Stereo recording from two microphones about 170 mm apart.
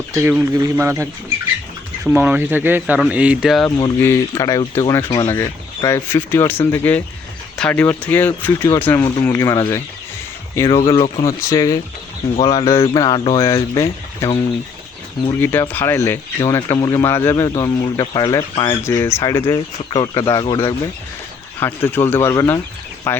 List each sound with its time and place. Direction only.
0.1 s speech: 15° right (ahead or behind)
2.1 s speech: 10° right (ahead or behind)
3.8 s speech: 20° left (ahead or behind)
9.0 s speech: 25° left (ahead or behind)
10.8 s speech: 30° left (ahead or behind)
15.3 s speech: 10° left (ahead or behind)
18.9 s speech: 15° left (ahead or behind)
21.6 s speech: 10° left (ahead or behind)